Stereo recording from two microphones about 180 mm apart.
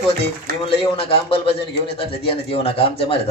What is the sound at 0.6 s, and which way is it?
Speech, 30° left (ahead or behind).